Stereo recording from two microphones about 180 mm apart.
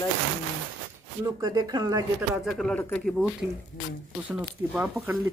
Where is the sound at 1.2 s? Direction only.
20° right (ahead or behind).